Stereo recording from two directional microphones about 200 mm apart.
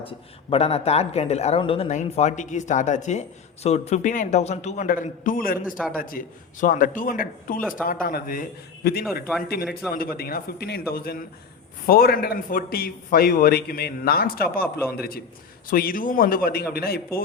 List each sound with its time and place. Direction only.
0.0 s a man's voice: 30° left (ahead or behind); by 17.2 s 50° left (ahead or behind)